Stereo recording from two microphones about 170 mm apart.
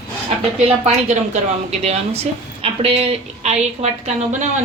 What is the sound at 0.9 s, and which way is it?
A woman's voice, 45° right (ahead or behind).